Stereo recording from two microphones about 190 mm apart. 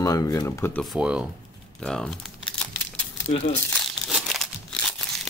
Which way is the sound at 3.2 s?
30° left (ahead or behind).